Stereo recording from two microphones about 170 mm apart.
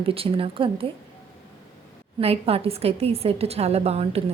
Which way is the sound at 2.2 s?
35° right (ahead or behind).